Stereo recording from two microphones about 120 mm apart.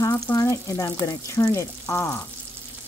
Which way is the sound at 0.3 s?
25° left (ahead or behind).